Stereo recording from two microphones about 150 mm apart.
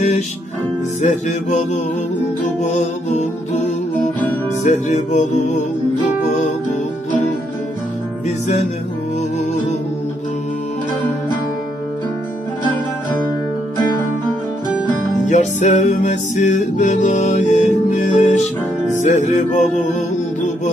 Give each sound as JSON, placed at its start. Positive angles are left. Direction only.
{"t": 1.0, "sound": "music", "side_deg": 50}
{"t": 4.6, "sound": "music", "side_deg": 50}
{"t": 15.2, "sound": "music", "side_deg": 55}